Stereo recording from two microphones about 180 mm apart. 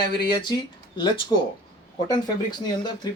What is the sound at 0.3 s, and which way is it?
Speech, 25° left (ahead or behind).